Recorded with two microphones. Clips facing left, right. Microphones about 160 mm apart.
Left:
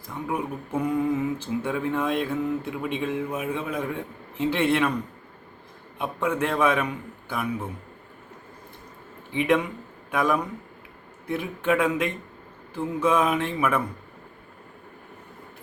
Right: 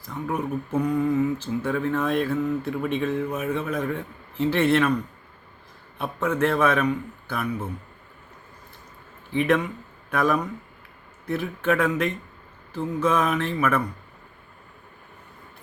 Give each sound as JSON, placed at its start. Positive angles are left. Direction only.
{"t": 0.0, "sound": "speech", "side_deg": 10}
{"t": 0.8, "sound": "mantra", "side_deg": 20}
{"t": 1.6, "sound": "speech", "side_deg": 15}
{"t": 6.2, "sound": "speech", "side_deg": 15}
{"t": 9.3, "sound": "speech", "side_deg": 15}